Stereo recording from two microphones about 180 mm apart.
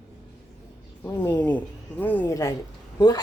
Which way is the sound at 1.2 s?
10° left (ahead or behind).